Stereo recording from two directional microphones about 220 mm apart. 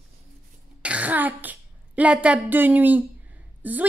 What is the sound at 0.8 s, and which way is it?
Speech, 5° right (ahead or behind).